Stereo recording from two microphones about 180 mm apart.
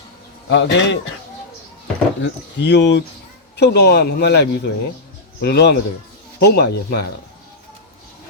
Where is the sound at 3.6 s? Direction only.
65° left (ahead or behind).